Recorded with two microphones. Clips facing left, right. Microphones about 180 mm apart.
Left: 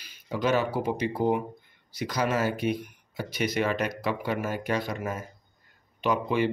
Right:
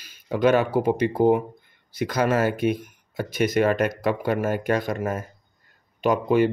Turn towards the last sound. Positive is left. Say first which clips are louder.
# right 6 dB
turn(degrees=-45)  # may be behind; listen again after turning